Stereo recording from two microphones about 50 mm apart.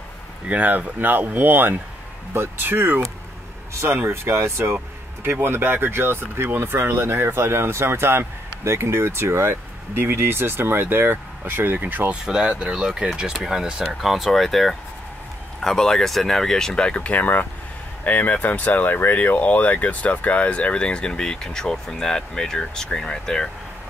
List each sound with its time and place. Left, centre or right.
0.5 s speech: right
5.2 s speech: right
12.1 s speech: centre
14.0 s speech: centre